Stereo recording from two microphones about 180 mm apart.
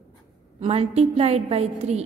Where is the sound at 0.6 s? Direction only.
35° right (ahead or behind).